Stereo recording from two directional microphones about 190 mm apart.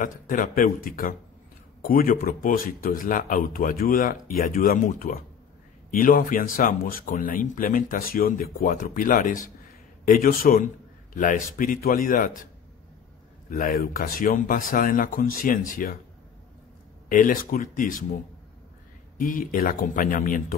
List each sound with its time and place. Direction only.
0.0 s speech: 45° left (ahead or behind)
13.5 s speech: 45° left (ahead or behind)
17.1 s speech: 45° left (ahead or behind)
19.1 s speech: 45° left (ahead or behind)